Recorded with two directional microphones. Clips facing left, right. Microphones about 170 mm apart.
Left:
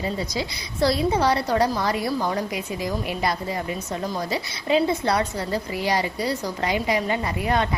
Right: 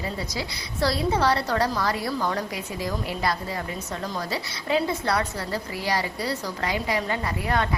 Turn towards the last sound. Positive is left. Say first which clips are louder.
# left 2 dB
turn(degrees=20)  # may be behind; listen again after turning